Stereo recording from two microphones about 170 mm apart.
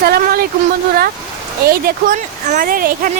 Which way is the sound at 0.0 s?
65° right (ahead or behind).